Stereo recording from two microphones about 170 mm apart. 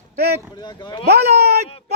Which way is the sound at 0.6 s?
25° left (ahead or behind).